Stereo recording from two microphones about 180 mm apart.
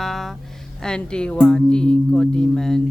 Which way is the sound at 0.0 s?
Centre (ahead or behind).